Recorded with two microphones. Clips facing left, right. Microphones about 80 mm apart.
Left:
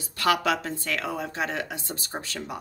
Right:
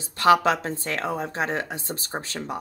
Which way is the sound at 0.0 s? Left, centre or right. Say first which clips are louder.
Right 6 dB; right.